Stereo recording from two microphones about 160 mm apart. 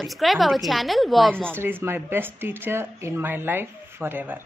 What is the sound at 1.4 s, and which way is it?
A woman's voice, 15° right (ahead or behind).